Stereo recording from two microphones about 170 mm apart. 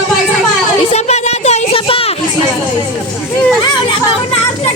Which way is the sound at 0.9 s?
40° left (ahead or behind).